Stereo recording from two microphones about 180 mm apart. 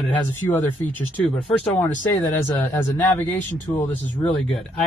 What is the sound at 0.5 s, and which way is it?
Speech, 10° left (ahead or behind).